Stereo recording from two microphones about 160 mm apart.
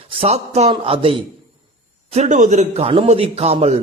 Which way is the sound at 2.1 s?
45° right (ahead or behind).